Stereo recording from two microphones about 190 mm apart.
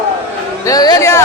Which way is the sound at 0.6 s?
20° left (ahead or behind).